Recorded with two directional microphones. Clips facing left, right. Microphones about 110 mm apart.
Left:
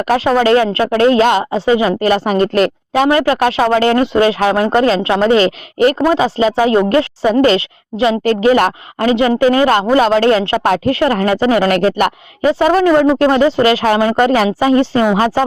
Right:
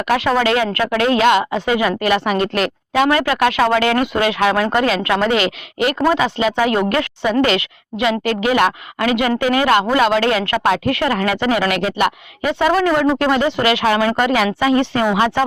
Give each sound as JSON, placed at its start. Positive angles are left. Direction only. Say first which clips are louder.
{"t": 0.0, "sound": "speech", "louder": "left 4 dB", "side_deg": 35}
{"t": 12.5, "sound": "speech", "louder": "left 5 dB", "side_deg": 35}